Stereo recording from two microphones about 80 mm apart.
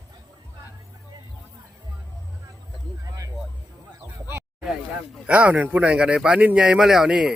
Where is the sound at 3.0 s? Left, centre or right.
Right.